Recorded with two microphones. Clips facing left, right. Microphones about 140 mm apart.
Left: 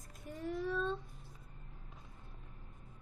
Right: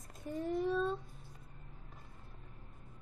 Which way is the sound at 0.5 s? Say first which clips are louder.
Right 3 dB; 15° right (ahead or behind).